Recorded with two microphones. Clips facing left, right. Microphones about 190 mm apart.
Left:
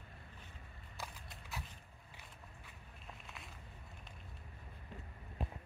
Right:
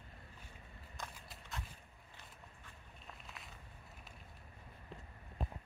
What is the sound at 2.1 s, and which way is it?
Walk, 5° left (ahead or behind).